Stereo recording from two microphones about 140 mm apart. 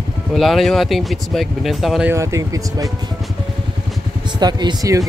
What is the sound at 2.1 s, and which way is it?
Speech, 20° right (ahead or behind).